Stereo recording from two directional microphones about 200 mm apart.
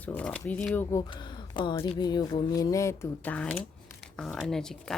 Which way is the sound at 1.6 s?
25° left (ahead or behind).